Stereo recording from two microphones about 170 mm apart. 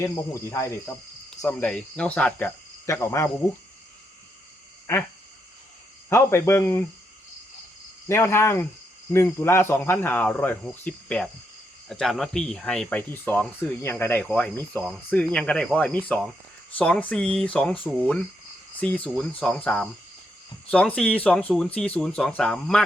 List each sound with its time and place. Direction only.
0.0 s speech: 15° left (ahead or behind)
4.9 s speech: 15° left (ahead or behind)
6.1 s speech: 15° left (ahead or behind)
8.0 s speech: 15° left (ahead or behind)
18.8 s speech: 5° left (ahead or behind)